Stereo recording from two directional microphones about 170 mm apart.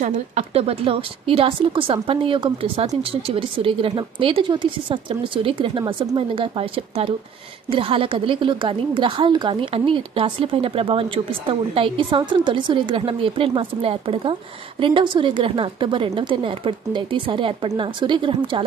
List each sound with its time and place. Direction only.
0.0 s a woman's voice: 40° right (ahead or behind)
7.7 s a woman's voice: 30° right (ahead or behind)